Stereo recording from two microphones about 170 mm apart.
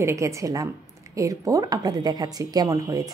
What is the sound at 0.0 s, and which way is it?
A woman's voice, 15° right (ahead or behind).